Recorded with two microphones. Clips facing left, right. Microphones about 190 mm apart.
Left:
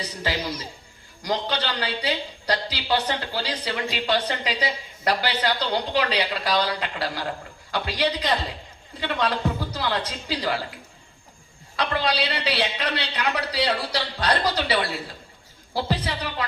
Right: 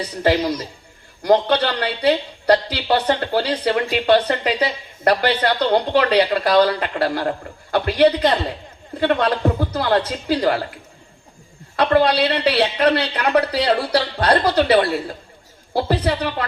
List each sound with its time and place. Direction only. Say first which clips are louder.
0.0 s a man's voice: right 10 dB; 55° right (ahead or behind)
11.8 s a man's voice: right 9 dB; 55° right (ahead or behind)